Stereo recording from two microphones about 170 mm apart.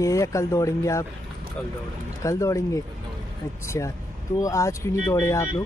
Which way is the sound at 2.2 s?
20° left (ahead or behind).